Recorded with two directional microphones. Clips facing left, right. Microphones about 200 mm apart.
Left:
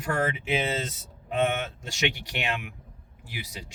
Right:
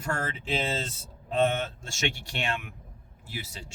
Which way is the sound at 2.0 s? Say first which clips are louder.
Left 2 dB; 20° left (ahead or behind).